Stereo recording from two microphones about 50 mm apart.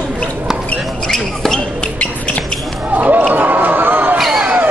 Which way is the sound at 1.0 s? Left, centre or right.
Centre.